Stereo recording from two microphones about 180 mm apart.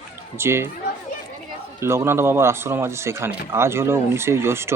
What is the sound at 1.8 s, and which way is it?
Speech, 15° right (ahead or behind).